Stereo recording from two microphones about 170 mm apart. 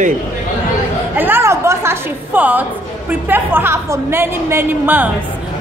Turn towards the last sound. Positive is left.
turn(degrees=-10)  # may be behind; listen again after turning